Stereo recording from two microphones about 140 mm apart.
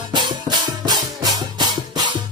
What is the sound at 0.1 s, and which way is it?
Music, 30° right (ahead or behind).